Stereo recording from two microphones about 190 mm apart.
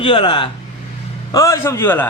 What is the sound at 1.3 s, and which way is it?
Speech, 15° left (ahead or behind).